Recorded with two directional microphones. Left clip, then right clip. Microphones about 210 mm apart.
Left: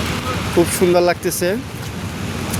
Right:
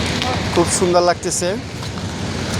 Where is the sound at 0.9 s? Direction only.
40° left (ahead or behind).